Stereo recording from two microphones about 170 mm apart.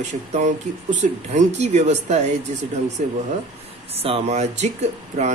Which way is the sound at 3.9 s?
35° right (ahead or behind).